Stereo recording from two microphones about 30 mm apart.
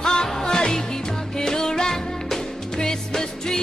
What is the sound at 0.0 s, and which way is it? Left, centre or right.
Music, left.